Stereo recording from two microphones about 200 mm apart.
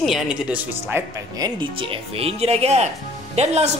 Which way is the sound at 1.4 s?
20° right (ahead or behind).